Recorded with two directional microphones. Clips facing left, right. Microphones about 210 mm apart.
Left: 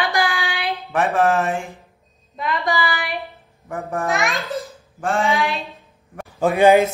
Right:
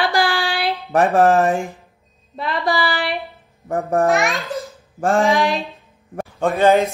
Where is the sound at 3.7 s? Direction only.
40° right (ahead or behind).